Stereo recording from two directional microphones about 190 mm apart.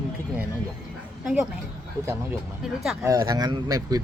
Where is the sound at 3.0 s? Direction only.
20° right (ahead or behind).